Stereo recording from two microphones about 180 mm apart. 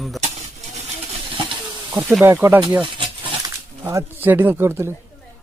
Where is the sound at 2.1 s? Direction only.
10° right (ahead or behind).